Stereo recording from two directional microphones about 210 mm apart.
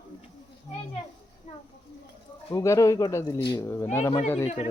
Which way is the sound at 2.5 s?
15° left (ahead or behind).